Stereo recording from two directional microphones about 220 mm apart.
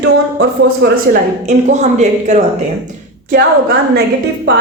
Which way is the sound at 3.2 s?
45° right (ahead or behind).